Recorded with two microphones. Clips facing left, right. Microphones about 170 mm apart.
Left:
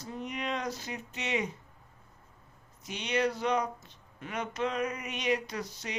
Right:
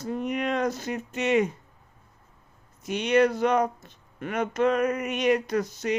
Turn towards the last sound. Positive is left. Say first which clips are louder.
# right 12 dB
turn(degrees=-50)  # may be behind; listen again after turning